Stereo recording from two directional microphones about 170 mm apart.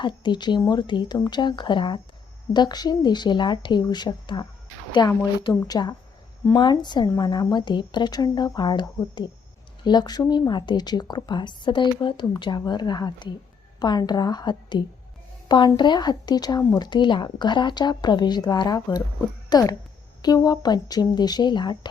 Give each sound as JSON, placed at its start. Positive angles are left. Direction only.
{"t": 0.0, "sound": "speech", "side_deg": 25}